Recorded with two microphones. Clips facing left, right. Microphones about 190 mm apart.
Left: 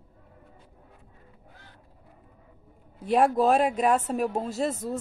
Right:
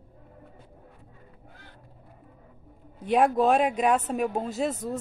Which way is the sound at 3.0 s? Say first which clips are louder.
Even; centre (ahead or behind).